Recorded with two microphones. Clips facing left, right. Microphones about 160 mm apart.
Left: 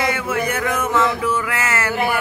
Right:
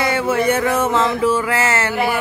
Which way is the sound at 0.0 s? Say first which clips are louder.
Right 4 dB; 30° right (ahead or behind).